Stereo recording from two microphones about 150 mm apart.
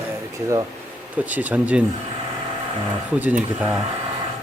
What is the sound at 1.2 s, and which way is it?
Speech, 10° right (ahead or behind).